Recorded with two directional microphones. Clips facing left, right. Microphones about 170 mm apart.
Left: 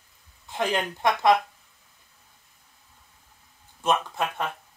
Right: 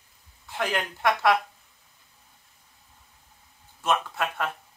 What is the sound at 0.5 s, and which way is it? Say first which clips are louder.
Speech: left 2 dB; 20° left (ahead or behind).